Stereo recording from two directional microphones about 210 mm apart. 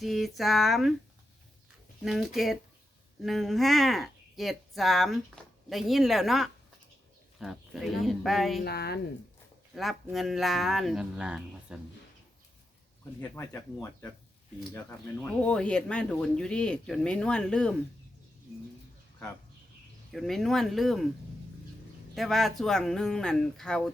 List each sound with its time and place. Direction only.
0.0 s speech: centre (ahead or behind)
2.0 s speech: centre (ahead or behind)
8.6 s a woman's voice: 50° left (ahead or behind)
9.7 s speech: centre (ahead or behind)
13.1 s speech: 10° left (ahead or behind)
14.7 s speech: 10° left (ahead or behind)
20.1 s speech: centre (ahead or behind)
22.1 s speech: centre (ahead or behind)